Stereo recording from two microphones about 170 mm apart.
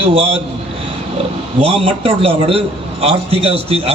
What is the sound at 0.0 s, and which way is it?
Speech, 35° right (ahead or behind).